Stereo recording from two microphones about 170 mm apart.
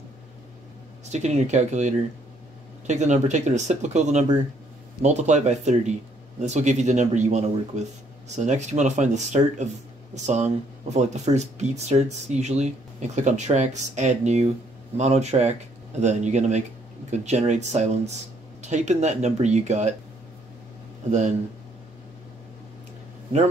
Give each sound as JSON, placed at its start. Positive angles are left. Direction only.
{"t": 1.1, "sound": "speech", "side_deg": -45}